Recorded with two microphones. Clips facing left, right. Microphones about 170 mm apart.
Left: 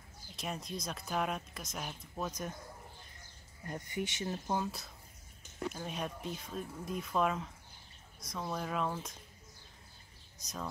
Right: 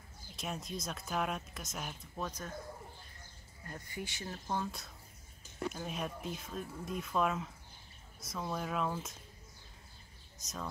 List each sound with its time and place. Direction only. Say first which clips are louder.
0.4 s speech: even; centre (ahead or behind)
3.6 s speech: left 5 dB; 20° left (ahead or behind)
4.6 s speech: left 2 dB; centre (ahead or behind)
10.4 s speech: left 1 dB; centre (ahead or behind)